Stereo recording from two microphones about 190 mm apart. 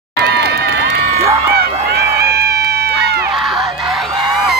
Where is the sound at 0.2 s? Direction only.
60° right (ahead or behind).